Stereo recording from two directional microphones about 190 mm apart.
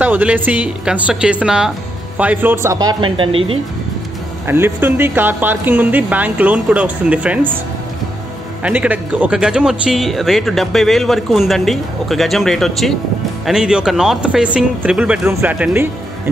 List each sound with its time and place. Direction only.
0.0 s speech: 10° right (ahead or behind); by 3.5 s 30° right (ahead or behind)
4.5 s speech: 10° right (ahead or behind)
8.6 s speech: 10° right (ahead or behind)